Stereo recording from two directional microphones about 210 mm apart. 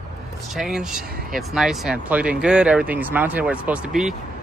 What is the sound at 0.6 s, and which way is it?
Speech, centre (ahead or behind).